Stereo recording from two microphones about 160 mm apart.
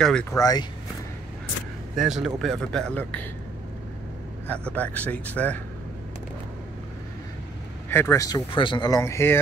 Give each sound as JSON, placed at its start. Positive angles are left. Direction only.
{"t": 0.0, "sound": "speech", "side_deg": 5}
{"t": 0.3, "sound": "speech", "side_deg": 20}
{"t": 2.0, "sound": "speech", "side_deg": 0}
{"t": 4.7, "sound": "speech", "side_deg": 10}
{"t": 7.9, "sound": "speech", "side_deg": 15}
{"t": 8.5, "sound": "speech", "side_deg": 30}